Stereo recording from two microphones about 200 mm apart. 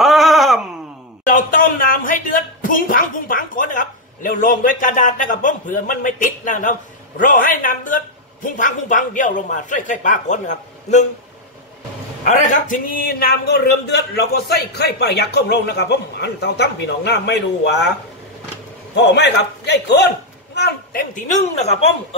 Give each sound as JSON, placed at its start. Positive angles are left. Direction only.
{"t": 0.0, "sound": "wail", "side_deg": 0}
{"t": 1.2, "sound": "a sound", "side_deg": 40}
{"t": 8.5, "sound": "a man's voice", "side_deg": 40}
{"t": 12.3, "sound": "a man's voice", "side_deg": 40}
{"t": 18.9, "sound": "a man's voice", "side_deg": 60}
{"t": 21.1, "sound": "a man's voice", "side_deg": 35}